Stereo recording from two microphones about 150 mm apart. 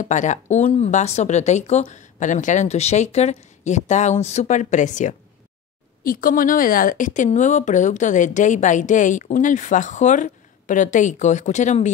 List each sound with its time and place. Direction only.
0.0 s speech: 55° left (ahead or behind)
6.0 s speech: 65° left (ahead or behind); by 11.9 s 50° left (ahead or behind)